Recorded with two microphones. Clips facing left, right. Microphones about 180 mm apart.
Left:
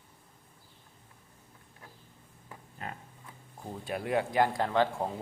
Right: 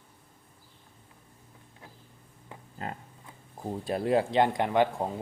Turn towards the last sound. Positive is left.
turn(degrees=-15)  # may be behind; listen again after turning